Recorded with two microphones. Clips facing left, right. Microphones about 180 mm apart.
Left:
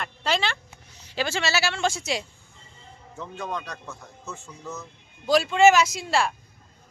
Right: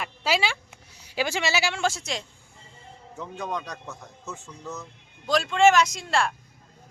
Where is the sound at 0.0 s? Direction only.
5° right (ahead or behind).